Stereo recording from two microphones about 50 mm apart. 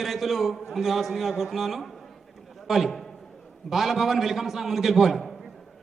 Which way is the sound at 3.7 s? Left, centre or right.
Centre.